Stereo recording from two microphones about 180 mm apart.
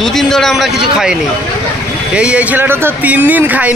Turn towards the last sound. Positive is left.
turn(degrees=-10)  # may be behind; listen again after turning